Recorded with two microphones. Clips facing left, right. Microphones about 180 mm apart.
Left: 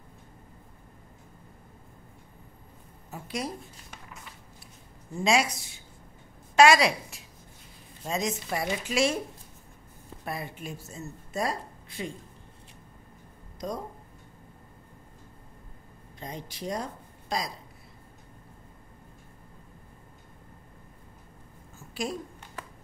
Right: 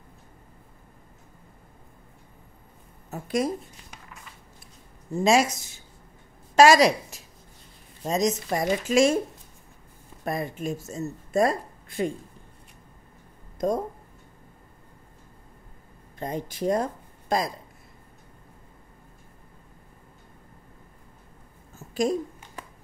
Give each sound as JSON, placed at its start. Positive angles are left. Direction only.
{"t": 3.1, "sound": "speech", "side_deg": -50}
{"t": 5.2, "sound": "a woman's voice", "side_deg": -45}
{"t": 10.2, "sound": "speech", "side_deg": -45}
{"t": 13.6, "sound": "speech", "side_deg": -50}
{"t": 16.2, "sound": "speech", "side_deg": -50}
{"t": 21.7, "sound": "a sound", "side_deg": -45}